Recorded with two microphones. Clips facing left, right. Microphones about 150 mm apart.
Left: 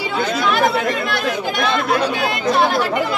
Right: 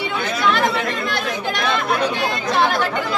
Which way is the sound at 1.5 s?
5° left (ahead or behind).